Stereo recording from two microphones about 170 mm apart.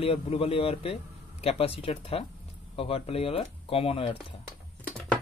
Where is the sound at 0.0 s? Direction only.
35° left (ahead or behind).